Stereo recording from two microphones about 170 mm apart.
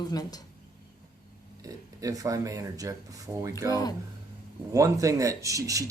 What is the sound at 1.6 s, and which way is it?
Speech, 20° right (ahead or behind).